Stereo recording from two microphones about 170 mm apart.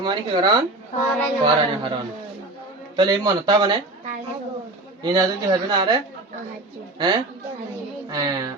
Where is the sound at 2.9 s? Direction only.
25° right (ahead or behind).